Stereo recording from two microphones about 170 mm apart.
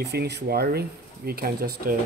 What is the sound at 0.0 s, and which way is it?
Speech, 80° right.